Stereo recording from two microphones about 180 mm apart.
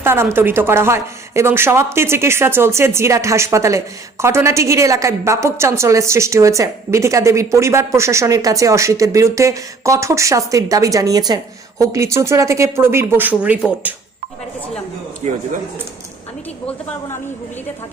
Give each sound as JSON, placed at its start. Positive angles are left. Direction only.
{"t": 0.0, "sound": "speech", "side_deg": -15}
{"t": 15.2, "sound": "speech", "side_deg": -40}